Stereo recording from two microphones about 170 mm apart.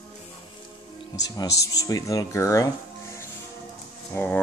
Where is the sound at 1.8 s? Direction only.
20° left (ahead or behind).